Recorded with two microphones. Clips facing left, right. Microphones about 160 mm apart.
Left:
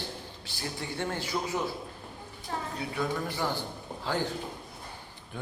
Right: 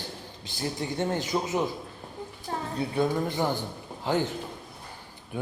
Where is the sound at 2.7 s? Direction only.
25° right (ahead or behind).